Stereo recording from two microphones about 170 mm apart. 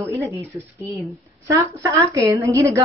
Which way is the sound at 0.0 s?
15° right (ahead or behind).